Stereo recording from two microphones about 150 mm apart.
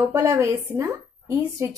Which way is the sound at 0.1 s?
15° right (ahead or behind).